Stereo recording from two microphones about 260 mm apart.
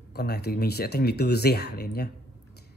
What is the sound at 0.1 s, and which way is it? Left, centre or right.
Speech, left.